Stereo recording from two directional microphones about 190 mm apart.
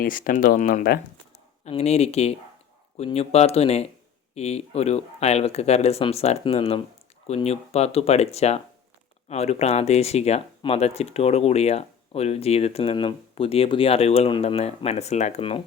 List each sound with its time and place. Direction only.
0.0 s speech: 45° left (ahead or behind)
1.6 s speech: 35° left (ahead or behind)